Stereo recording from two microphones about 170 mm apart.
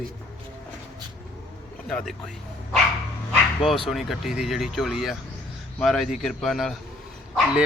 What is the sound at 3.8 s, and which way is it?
A man's voice, centre (ahead or behind).